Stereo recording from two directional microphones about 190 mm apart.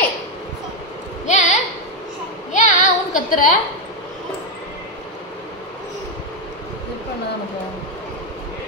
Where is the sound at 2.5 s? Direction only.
40° left (ahead or behind).